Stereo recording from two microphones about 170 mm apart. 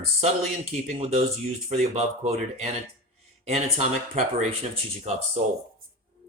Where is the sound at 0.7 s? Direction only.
40° right (ahead or behind).